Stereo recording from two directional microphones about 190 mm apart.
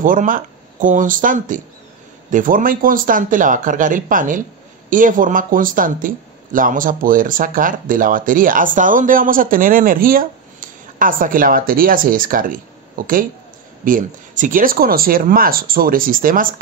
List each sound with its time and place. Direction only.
0.0 s speech: 45° right (ahead or behind)